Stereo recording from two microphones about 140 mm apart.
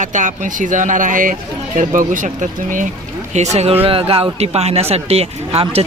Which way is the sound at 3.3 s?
55° right (ahead or behind).